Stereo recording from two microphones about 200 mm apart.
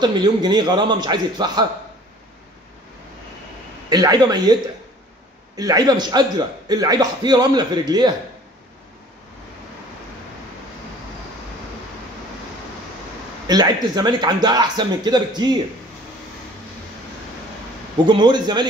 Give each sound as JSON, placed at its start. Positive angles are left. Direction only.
{"t": 0.0, "sound": "a man's voice", "side_deg": -20}
{"t": 3.9, "sound": "a man's voice", "side_deg": -20}
{"t": 5.6, "sound": "a man's voice", "side_deg": -20}
{"t": 13.5, "sound": "a man's voice", "side_deg": -20}
{"t": 17.9, "sound": "a man's voice", "side_deg": -20}